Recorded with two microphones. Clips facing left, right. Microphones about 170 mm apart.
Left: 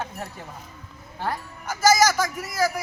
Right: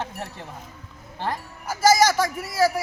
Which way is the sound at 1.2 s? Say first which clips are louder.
Even; 25° right (ahead or behind).